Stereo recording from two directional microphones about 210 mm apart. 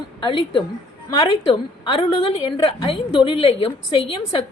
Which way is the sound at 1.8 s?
25° left (ahead or behind).